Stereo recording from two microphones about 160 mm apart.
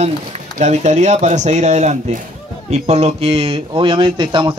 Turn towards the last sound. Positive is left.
turn(degrees=-30)  # may be behind; listen again after turning